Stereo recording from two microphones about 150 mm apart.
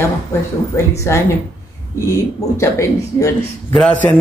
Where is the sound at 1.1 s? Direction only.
20° left (ahead or behind).